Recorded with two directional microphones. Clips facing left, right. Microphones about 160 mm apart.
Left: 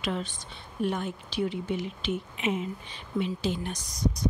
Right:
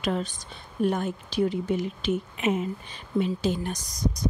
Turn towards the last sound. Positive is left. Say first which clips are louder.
# right 1 dB
turn(degrees=-40)  # may be behind; listen again after turning